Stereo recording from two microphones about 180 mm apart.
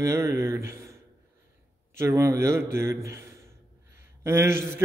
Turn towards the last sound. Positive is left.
turn(degrees=-15)  # may be behind; listen again after turning